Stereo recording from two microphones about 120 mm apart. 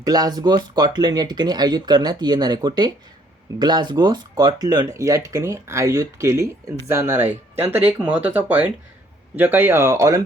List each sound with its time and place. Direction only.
0.0 s speech: 35° right (ahead or behind)